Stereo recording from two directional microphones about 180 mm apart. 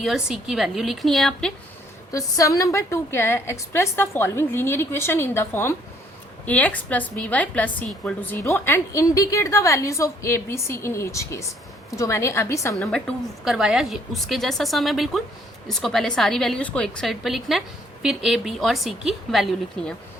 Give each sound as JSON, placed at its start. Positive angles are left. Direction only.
{"t": 0.0, "sound": "a woman's voice", "side_deg": 0}
{"t": 2.1, "sound": "a woman's voice", "side_deg": 20}
{"t": 12.7, "sound": "a woman's voice", "side_deg": 5}